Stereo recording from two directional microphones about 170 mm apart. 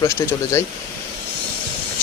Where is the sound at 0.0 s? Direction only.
15° left (ahead or behind).